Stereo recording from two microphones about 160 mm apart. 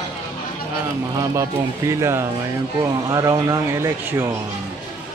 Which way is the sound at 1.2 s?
20° right (ahead or behind).